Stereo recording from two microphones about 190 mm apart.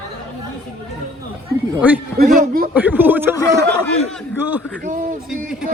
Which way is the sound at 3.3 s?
15° left (ahead or behind).